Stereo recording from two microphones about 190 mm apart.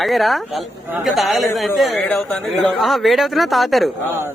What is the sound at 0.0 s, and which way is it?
Speech, centre (ahead or behind).